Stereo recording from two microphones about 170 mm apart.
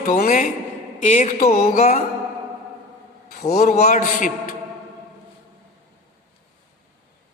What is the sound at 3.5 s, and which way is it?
Speech, 65° left (ahead or behind).